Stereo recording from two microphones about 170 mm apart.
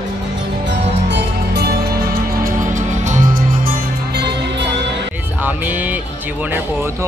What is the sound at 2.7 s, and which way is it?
Music, 45° right (ahead or behind).